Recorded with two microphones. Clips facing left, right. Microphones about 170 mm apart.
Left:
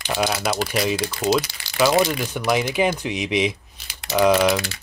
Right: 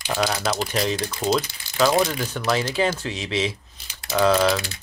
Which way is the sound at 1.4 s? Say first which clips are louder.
Left 2 dB; 90° left.